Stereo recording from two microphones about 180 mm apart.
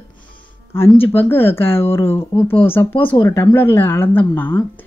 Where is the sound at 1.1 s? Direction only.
10° left (ahead or behind).